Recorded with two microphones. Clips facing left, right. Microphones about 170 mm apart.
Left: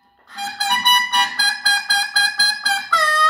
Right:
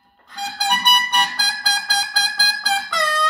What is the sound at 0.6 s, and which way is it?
Music, 10° right (ahead or behind).